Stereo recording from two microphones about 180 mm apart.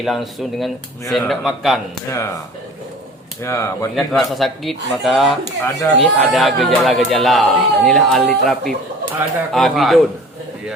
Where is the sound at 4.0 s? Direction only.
Centre (ahead or behind).